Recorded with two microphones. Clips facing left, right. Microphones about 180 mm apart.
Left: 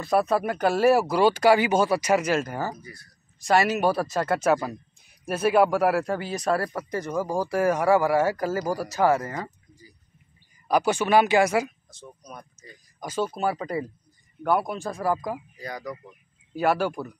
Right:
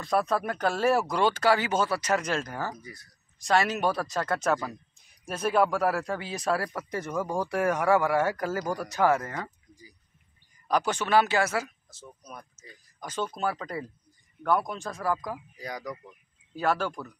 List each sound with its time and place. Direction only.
0.0 s speech: 5° left (ahead or behind)
2.8 s speech: 20° right (ahead or behind)
3.4 s speech: 5° left (ahead or behind)
10.7 s speech: 10° left (ahead or behind)
11.9 s speech: 5° right (ahead or behind)
13.0 s speech: 10° left (ahead or behind)
15.5 s speech: 10° right (ahead or behind)
15.9 s speech: 10° left (ahead or behind)